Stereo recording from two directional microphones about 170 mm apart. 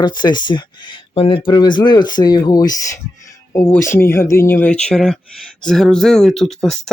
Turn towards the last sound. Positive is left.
turn(degrees=0)  # may be behind; listen again after turning